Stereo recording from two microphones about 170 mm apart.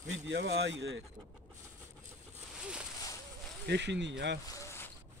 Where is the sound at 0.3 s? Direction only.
90° right.